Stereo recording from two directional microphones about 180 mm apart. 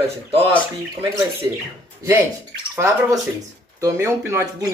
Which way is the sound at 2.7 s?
15° right (ahead or behind).